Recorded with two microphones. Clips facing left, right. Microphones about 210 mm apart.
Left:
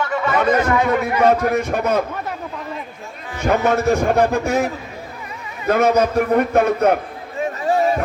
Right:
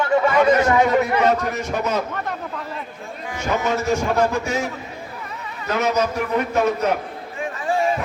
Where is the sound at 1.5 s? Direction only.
55° left (ahead or behind).